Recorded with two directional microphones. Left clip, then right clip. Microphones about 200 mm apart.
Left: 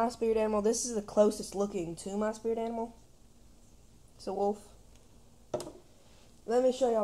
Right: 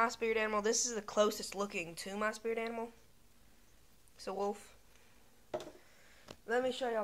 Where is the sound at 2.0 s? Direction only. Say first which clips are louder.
Left 3 dB; 35° right (ahead or behind).